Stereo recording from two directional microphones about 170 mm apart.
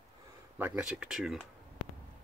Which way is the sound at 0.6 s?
10° right (ahead or behind).